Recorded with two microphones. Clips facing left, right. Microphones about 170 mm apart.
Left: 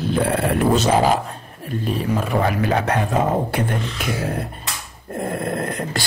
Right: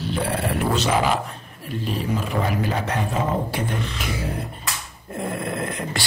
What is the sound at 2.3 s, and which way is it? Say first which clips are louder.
Speech: left 6 dB; 60° left (ahead or behind).